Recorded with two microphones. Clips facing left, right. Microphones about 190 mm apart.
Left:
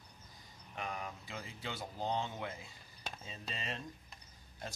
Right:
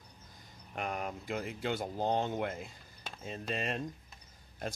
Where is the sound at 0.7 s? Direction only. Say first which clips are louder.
Right 6 dB; 55° right (ahead or behind).